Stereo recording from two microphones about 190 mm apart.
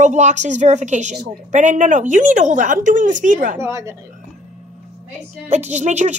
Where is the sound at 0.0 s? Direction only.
40° right (ahead or behind).